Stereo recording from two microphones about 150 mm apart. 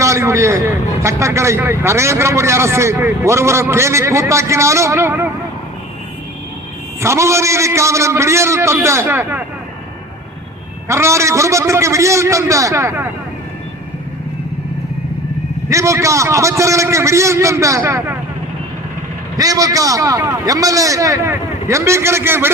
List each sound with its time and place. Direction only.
0.0 s a man's voice: 20° right (ahead or behind)
7.0 s a man's voice: 20° right (ahead or behind)
10.8 s a man's voice: 20° right (ahead or behind)
15.7 s a man's voice: 20° right (ahead or behind)
19.4 s a man's voice: 25° right (ahead or behind)